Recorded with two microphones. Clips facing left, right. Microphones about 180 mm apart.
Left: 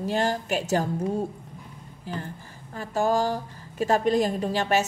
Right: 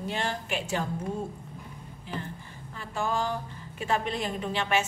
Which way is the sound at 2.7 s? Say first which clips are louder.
Left 7 dB; 40° left (ahead or behind).